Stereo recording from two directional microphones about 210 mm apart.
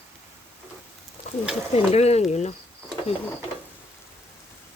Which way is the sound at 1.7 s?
30° left (ahead or behind).